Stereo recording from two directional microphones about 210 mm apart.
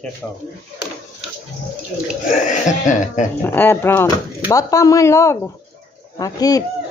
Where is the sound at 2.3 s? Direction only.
35° left (ahead or behind).